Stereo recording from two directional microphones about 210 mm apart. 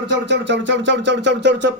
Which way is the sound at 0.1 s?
55° right (ahead or behind).